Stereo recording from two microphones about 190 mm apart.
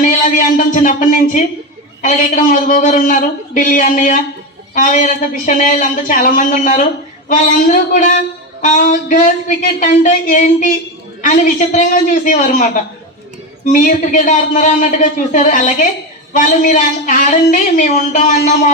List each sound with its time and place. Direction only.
0.0 s a man's voice: 45° left (ahead or behind)
13.7 s a man's voice: 40° left (ahead or behind)